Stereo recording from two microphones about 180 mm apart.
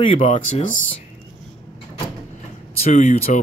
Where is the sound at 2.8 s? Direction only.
40° left (ahead or behind).